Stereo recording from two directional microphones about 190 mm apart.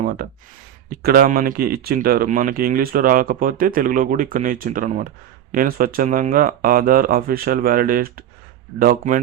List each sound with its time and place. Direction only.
0.0 s speech: 50° right (ahead or behind)